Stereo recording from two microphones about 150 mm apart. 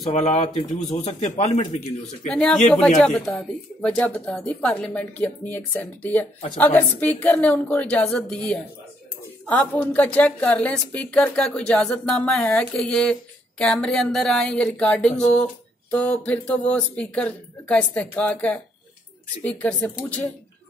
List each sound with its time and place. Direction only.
0.1 s speech: 50° left (ahead or behind)
2.2 s a woman's voice: 5° left (ahead or behind)